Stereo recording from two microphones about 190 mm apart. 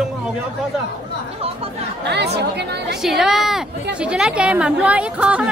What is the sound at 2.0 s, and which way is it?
Speech, 60° right (ahead or behind).